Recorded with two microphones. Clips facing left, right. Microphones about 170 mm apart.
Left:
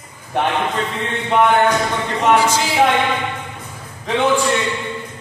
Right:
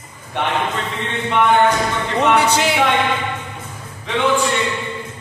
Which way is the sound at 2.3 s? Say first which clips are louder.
Right 1 dB; 65° right (ahead or behind).